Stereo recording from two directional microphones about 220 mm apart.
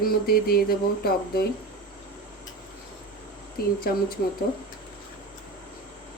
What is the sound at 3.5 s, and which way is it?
Speech, 45° left (ahead or behind).